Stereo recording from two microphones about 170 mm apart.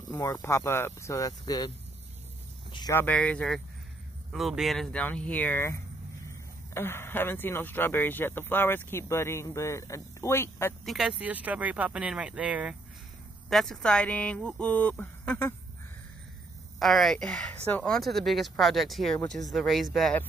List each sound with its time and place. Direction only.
0.1 s speech: 20° left (ahead or behind)
2.9 s speech: 10° left (ahead or behind)
10.9 s speech: 5° right (ahead or behind)
16.8 s speech: centre (ahead or behind)